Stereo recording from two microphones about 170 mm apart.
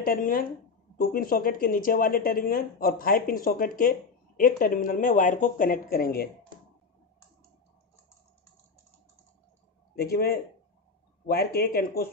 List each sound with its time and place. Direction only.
0.0 s speech: 55° left (ahead or behind)
9.9 s speech: 65° left (ahead or behind)